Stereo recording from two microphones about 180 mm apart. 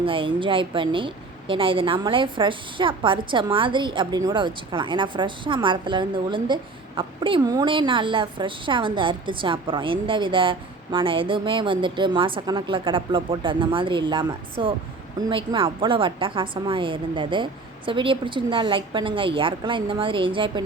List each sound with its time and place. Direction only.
0.0 s a woman's voice: 30° right (ahead or behind)